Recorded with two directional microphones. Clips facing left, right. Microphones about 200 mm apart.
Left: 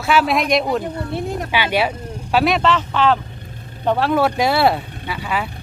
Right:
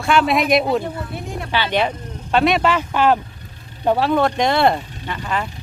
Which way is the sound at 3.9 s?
Centre (ahead or behind).